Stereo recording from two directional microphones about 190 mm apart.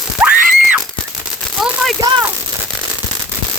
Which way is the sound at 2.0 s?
20° right (ahead or behind).